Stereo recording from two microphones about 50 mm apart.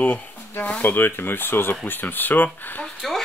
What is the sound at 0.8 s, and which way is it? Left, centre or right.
Speech, left.